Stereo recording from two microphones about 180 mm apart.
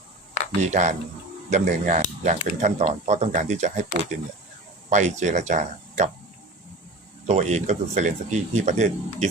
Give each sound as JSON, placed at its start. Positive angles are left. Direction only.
{"t": 0.6, "sound": "speech", "side_deg": -40}
{"t": 7.3, "sound": "speech", "side_deg": -40}